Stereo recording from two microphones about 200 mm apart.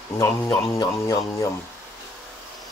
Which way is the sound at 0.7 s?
15° left (ahead or behind).